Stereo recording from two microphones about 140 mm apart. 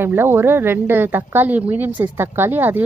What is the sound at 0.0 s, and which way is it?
Speech, 15° right (ahead or behind).